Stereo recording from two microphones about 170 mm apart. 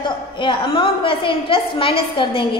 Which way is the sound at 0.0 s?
30° left (ahead or behind).